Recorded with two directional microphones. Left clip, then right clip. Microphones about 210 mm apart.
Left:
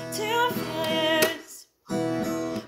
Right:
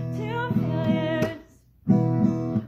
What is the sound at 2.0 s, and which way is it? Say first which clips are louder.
Music: right 1 dB; 5° left (ahead or behind).